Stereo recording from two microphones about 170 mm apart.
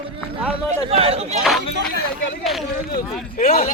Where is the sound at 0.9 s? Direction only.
35° right (ahead or behind).